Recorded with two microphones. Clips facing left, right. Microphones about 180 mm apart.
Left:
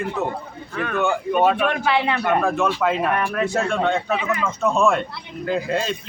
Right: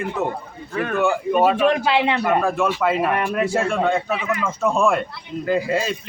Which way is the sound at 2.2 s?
Centre (ahead or behind).